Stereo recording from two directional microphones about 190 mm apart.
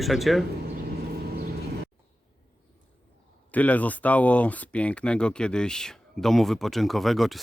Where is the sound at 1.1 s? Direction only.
55° right (ahead or behind).